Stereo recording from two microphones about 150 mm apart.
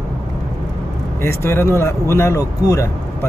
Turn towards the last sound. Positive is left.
turn(degrees=20)  # may be behind; listen again after turning